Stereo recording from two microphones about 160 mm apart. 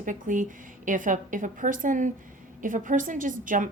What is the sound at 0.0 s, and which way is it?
Speech, 55° right (ahead or behind).